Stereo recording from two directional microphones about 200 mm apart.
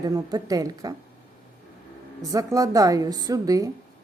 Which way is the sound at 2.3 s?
15° right (ahead or behind).